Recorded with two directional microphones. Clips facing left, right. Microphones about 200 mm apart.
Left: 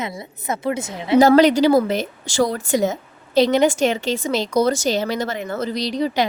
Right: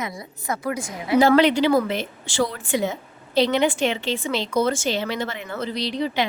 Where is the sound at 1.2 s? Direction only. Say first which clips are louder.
Left 4 dB; 40° left (ahead or behind).